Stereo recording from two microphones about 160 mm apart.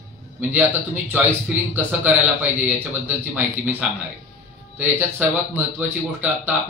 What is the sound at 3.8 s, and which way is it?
Speech, 5° right (ahead or behind).